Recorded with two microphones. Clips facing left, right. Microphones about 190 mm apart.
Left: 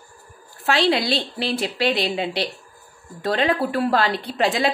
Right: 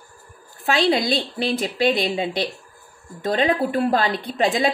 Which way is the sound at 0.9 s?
15° right (ahead or behind).